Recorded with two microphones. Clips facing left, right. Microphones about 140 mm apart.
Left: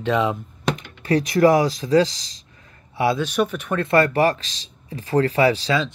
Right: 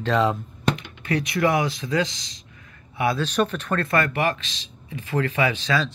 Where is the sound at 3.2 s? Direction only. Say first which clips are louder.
Left 1 dB; 10° left (ahead or behind).